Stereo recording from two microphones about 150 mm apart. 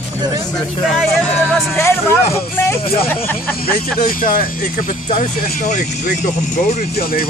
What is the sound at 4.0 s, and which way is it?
Speech, 65° left (ahead or behind).